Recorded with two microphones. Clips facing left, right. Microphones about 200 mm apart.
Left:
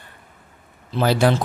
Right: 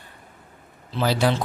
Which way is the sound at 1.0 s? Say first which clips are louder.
Left 4 dB; 55° left (ahead or behind).